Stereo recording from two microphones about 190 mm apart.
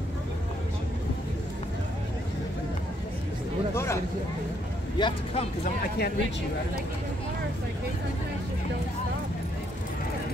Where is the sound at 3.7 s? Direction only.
15° left (ahead or behind).